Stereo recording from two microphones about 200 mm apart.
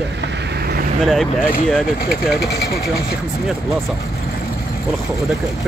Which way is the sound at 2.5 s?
55° left (ahead or behind).